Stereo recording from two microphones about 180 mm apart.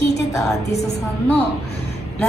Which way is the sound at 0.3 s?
15° left (ahead or behind).